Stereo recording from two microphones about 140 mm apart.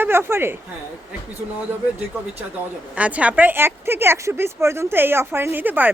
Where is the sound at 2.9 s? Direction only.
10° right (ahead or behind).